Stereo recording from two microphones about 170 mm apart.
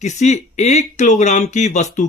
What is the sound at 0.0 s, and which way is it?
Speech, 45° left (ahead or behind).